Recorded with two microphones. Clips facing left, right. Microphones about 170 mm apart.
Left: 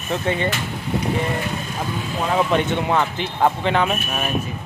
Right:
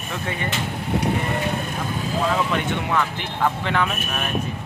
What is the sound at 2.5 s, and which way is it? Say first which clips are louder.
Speech: left 4 dB; 25° left (ahead or behind).